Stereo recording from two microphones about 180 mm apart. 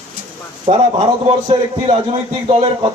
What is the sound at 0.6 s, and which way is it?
A man's voice, 30° right (ahead or behind).